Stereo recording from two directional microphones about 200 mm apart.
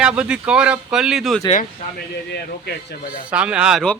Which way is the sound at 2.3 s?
55° left (ahead or behind).